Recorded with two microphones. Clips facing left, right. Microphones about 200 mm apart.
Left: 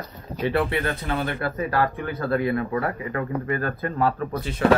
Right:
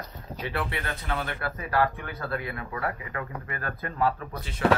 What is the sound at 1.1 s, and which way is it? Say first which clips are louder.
Speech: left 5 dB; 35° left (ahead or behind).